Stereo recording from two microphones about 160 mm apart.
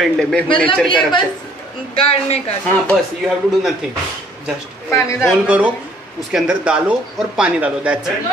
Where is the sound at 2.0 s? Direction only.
35° left (ahead or behind).